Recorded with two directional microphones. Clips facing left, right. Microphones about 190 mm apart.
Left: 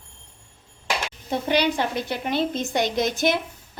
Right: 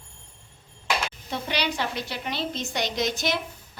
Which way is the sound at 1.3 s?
50° left (ahead or behind).